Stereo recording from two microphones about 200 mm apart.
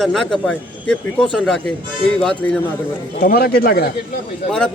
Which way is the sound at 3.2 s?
50° left (ahead or behind).